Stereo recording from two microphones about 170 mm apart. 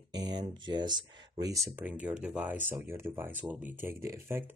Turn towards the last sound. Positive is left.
turn(degrees=-15)  # may be behind; listen again after turning